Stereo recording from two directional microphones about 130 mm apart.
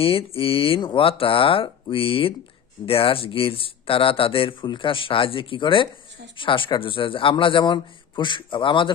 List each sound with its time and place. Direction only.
0.0 s speech: 45° left (ahead or behind)